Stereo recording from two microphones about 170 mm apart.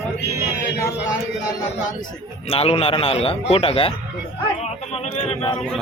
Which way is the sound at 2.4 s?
35° left (ahead or behind).